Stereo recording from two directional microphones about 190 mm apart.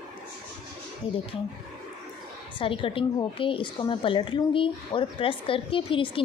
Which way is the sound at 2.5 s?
30° left (ahead or behind).